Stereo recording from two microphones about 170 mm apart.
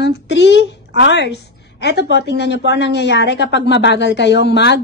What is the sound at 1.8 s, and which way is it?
A woman's voice, 85° left.